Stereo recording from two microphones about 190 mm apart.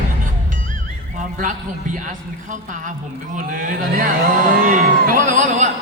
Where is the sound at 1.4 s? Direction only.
40° right (ahead or behind).